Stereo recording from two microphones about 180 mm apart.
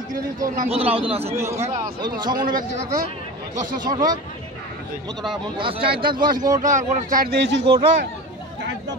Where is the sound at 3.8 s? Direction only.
20° right (ahead or behind).